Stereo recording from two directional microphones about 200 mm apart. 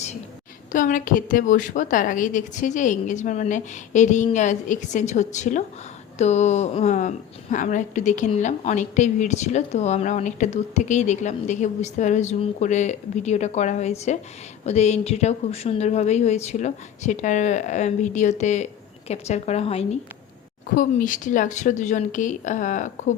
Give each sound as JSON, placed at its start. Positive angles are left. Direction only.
{"t": 0.7, "sound": "a woman's voice", "side_deg": 40}
{"t": 20.7, "sound": "a woman's voice", "side_deg": 40}